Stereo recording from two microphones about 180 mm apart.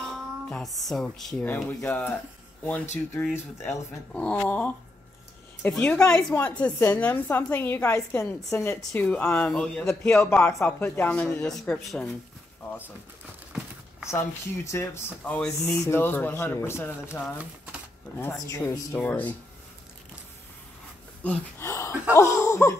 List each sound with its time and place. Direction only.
0.0 s speech: centre (ahead or behind)
3.2 s a woman's voice: 5° left (ahead or behind)
14.0 s a woman's voice: 15° left (ahead or behind)
18.2 s a woman's voice: 10° left (ahead or behind)
21.2 s speech: 10° left (ahead or behind)
22.1 s laughter: 15° left (ahead or behind)